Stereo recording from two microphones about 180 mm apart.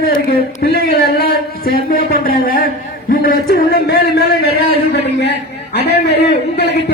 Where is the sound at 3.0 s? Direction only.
50° left (ahead or behind).